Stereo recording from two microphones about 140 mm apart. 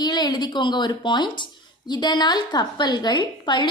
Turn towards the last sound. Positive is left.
turn(degrees=30)  # may be behind; listen again after turning